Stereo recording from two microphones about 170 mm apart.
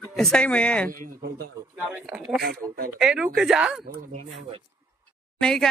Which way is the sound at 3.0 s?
5° right (ahead or behind).